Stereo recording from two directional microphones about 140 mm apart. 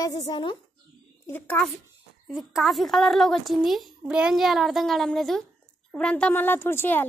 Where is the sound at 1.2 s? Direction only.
15° left (ahead or behind).